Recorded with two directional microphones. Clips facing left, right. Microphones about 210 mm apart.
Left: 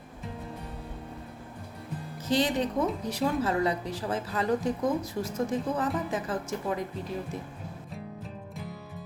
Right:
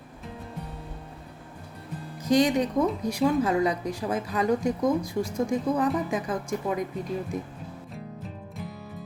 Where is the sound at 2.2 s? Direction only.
15° right (ahead or behind).